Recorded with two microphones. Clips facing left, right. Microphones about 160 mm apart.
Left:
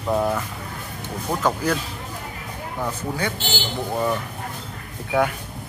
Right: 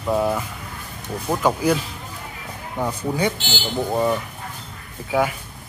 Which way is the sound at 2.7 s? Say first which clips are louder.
Right 4 dB; 15° right (ahead or behind).